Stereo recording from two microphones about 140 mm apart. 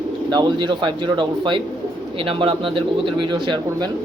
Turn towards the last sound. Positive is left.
turn(degrees=-35)  # may be behind; listen again after turning